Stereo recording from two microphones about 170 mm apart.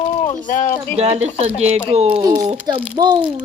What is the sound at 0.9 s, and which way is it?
Speech, 40° right (ahead or behind).